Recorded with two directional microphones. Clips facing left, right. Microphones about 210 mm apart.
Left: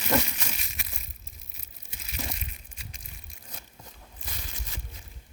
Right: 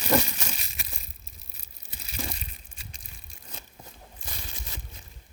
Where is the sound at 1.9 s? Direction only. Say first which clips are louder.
Right 1 dB; 35° right (ahead or behind).